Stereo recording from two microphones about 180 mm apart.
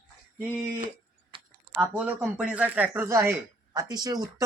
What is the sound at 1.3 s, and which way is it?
Typing, 30° right (ahead or behind).